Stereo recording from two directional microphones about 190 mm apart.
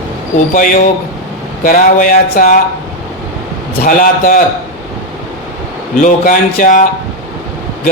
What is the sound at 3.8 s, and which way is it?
Speech, 45° left (ahead or behind).